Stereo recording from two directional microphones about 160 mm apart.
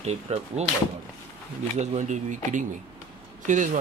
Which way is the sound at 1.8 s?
45° right (ahead or behind).